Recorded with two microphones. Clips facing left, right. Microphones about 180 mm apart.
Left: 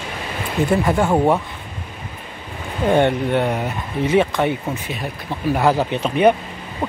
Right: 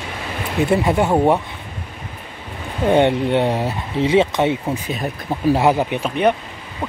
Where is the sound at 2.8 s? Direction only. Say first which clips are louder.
Right 1 dB; 20° right (ahead or behind).